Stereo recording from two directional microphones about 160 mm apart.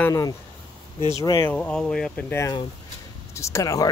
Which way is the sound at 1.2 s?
25° left (ahead or behind).